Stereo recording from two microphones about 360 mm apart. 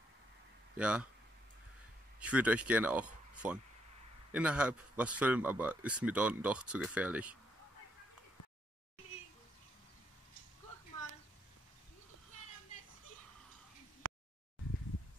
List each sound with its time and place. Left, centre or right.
0.7 s speech: centre
2.1 s speech: centre
14.0 s a sound: right